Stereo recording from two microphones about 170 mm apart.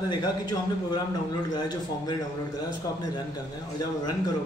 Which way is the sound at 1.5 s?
25° left (ahead or behind).